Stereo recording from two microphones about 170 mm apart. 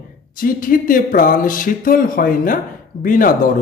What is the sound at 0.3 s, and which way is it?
Speech, 55° left (ahead or behind).